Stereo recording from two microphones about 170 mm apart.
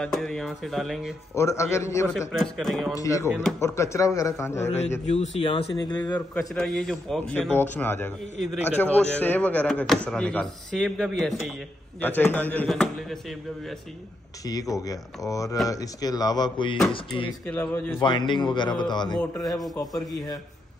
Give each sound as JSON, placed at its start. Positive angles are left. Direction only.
{"t": 0.0, "sound": "a man's voice", "side_deg": 5}
{"t": 1.3, "sound": "speech", "side_deg": 15}
{"t": 2.3, "sound": "a man's voice", "side_deg": 0}
{"t": 2.9, "sound": "speech", "side_deg": 20}
{"t": 4.6, "sound": "speech", "side_deg": 40}
{"t": 6.1, "sound": "a man's voice", "side_deg": 5}
{"t": 12.0, "sound": "speech", "side_deg": 10}
{"t": 14.4, "sound": "speech", "side_deg": 20}
{"t": 17.5, "sound": "speech", "side_deg": 10}
{"t": 18.0, "sound": "speech", "side_deg": 30}